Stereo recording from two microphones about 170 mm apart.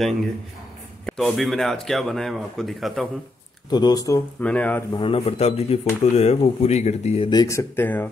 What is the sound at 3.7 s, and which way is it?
Speech, 25° left (ahead or behind).